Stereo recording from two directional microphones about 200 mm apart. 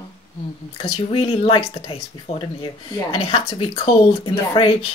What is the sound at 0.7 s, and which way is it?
Speech, 25° left (ahead or behind).